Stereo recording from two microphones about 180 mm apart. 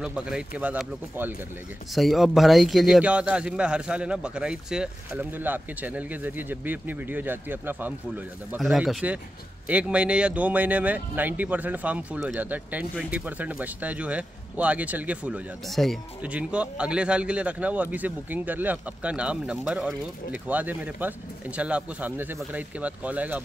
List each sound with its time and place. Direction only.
0.0 s a man's voice: 5° right (ahead or behind)